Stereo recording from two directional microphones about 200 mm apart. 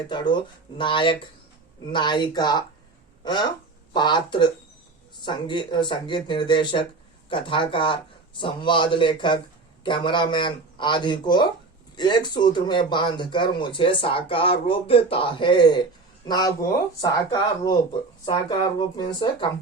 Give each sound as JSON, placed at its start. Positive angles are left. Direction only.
{"t": 0.1, "sound": "speech", "side_deg": 25}